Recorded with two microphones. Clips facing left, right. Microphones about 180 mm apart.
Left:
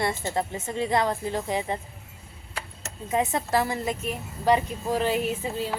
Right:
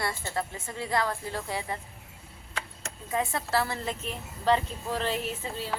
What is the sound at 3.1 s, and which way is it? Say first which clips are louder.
A woman's voice: left 4 dB; 20° left (ahead or behind).